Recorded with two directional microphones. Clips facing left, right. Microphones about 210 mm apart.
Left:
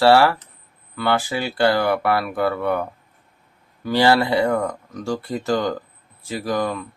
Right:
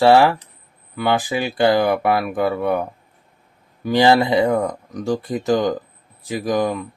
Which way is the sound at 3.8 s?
15° right (ahead or behind).